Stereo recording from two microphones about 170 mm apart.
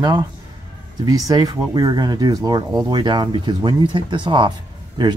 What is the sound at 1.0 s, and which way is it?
Speech, 20° right (ahead or behind).